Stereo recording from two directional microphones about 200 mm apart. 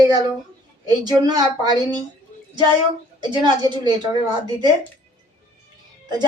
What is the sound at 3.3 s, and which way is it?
Speech, 20° right (ahead or behind).